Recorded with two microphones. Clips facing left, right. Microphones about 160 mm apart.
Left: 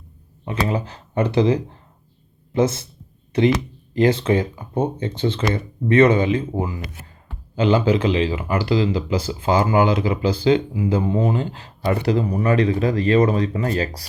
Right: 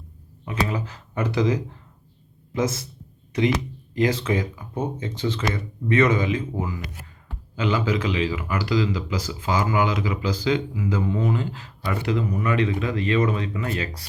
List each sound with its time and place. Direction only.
0.4 s a man's voice: 30° left (ahead or behind)